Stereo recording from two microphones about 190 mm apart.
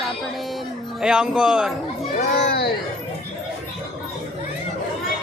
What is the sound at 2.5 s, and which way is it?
Speech, 55° left (ahead or behind).